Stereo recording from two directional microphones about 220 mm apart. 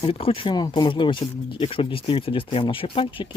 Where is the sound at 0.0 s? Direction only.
25° left (ahead or behind).